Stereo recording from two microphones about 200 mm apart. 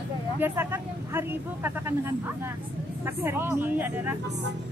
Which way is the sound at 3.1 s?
10° right (ahead or behind).